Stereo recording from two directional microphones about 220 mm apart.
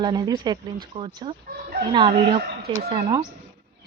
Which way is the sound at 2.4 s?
45° right (ahead or behind).